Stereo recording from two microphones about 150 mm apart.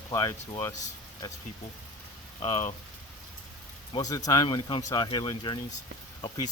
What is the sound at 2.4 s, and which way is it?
Speech, 45° left (ahead or behind).